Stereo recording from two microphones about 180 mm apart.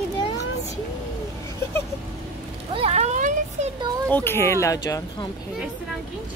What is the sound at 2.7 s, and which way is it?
Speech, 35° right (ahead or behind).